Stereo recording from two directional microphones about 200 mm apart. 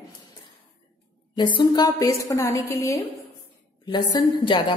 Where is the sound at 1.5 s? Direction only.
20° left (ahead or behind).